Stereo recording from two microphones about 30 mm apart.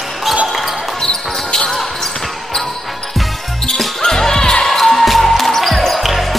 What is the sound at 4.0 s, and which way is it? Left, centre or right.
Music, centre.